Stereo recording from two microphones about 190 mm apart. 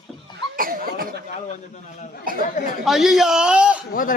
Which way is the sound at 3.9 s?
45° left (ahead or behind).